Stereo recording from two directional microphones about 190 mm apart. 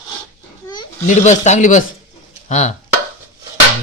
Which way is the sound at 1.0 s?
40° left (ahead or behind).